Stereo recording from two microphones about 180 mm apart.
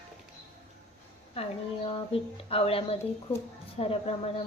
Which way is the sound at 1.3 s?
35° left (ahead or behind).